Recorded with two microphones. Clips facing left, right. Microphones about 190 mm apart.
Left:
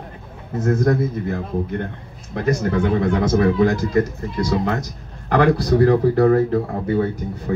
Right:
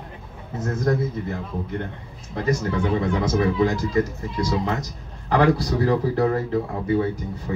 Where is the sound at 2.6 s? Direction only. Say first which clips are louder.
Left 4 dB; 60° left (ahead or behind).